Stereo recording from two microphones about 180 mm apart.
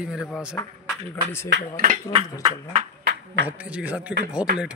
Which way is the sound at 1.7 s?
50° right (ahead or behind).